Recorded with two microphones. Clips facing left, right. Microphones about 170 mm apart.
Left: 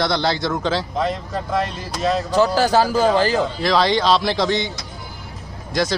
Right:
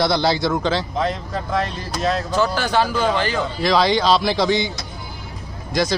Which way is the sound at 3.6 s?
Centre (ahead or behind).